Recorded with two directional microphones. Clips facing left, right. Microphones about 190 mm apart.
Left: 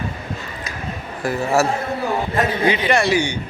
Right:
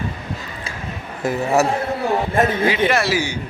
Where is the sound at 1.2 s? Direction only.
20° right (ahead or behind).